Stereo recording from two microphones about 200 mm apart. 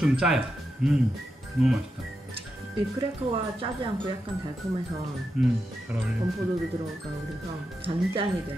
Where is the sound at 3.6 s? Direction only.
25° right (ahead or behind).